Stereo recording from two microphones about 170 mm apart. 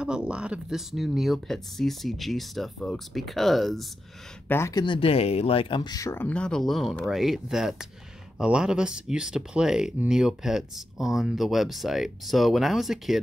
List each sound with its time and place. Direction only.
0.0 s speech: 5° right (ahead or behind)
4.5 s speech: 15° left (ahead or behind)
4.8 s speech: 30° left (ahead or behind); by 13.2 s centre (ahead or behind)